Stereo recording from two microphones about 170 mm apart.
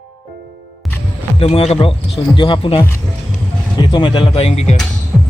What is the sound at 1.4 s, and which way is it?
Speech, 35° left (ahead or behind).